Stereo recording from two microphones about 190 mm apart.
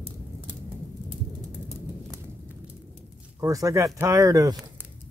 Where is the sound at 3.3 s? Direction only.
15° right (ahead or behind).